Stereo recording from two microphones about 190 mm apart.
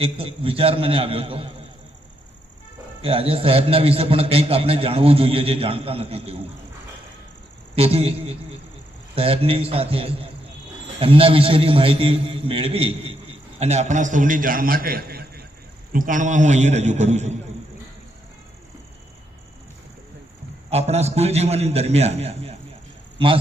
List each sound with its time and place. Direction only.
0.0 s a man's voice: 30° right (ahead or behind)
3.0 s a man's voice: 30° right (ahead or behind)
7.8 s a man's voice: 30° right (ahead or behind)
20.7 s a man's voice: 35° right (ahead or behind)